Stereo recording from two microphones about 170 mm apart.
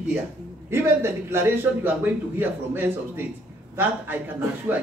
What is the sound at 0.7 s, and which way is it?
A man's voice, 15° right (ahead or behind).